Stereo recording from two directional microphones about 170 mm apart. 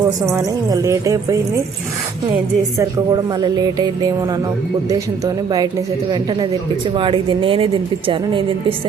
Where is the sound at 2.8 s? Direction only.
25° right (ahead or behind).